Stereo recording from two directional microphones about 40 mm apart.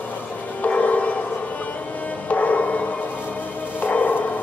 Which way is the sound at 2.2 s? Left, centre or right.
Left.